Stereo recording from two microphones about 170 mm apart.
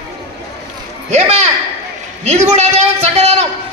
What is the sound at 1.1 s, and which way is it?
A man's voice, 40° right (ahead or behind).